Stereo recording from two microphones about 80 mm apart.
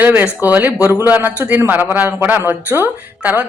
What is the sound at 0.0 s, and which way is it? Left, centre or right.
Speech, right.